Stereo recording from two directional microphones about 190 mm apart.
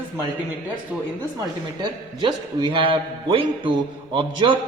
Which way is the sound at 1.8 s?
25° right (ahead or behind).